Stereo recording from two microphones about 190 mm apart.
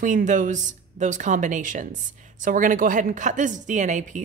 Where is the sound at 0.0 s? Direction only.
40° right (ahead or behind).